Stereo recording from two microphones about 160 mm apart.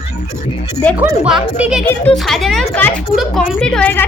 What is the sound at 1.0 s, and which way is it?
Speech, 10° right (ahead or behind).